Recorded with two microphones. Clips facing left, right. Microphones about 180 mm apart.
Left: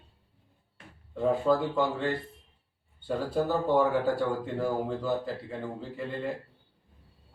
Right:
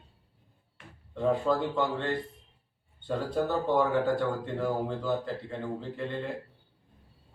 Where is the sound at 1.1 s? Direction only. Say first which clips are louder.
Left 1 dB; 5° left (ahead or behind).